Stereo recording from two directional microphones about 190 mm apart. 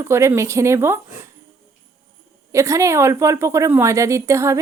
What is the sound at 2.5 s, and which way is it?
A woman's voice, 15° right (ahead or behind).